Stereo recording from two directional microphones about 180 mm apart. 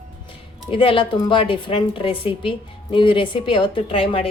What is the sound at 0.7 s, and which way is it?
A woman's voice, 30° left (ahead or behind).